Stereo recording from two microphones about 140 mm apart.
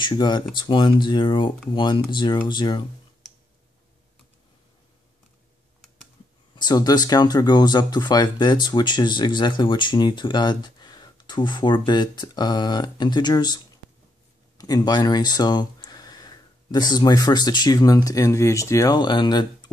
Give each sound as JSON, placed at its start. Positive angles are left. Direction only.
{"t": 0.0, "sound": "speech", "side_deg": 35}
{"t": 6.5, "sound": "speech", "side_deg": 30}
{"t": 14.6, "sound": "speech", "side_deg": 30}